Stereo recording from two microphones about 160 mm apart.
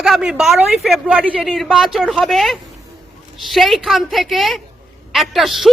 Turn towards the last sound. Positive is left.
turn(degrees=0)  # may be behind; listen again after turning